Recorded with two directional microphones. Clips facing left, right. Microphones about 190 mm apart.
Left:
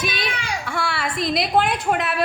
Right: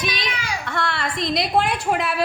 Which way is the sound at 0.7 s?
5° left (ahead or behind).